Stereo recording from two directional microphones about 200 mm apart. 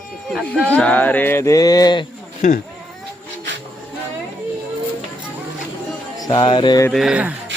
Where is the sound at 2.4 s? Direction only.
40° left (ahead or behind).